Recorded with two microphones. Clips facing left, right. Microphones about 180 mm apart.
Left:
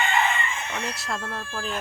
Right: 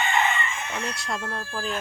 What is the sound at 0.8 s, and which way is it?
Speech, centre (ahead or behind).